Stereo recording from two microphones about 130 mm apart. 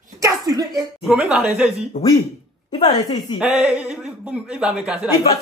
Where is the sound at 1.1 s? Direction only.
10° right (ahead or behind).